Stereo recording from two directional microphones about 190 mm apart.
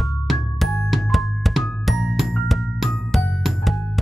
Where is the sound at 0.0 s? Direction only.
Centre (ahead or behind).